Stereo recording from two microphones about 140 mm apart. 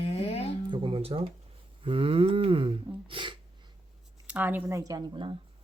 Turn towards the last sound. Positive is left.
turn(degrees=-25)  # may be behind; listen again after turning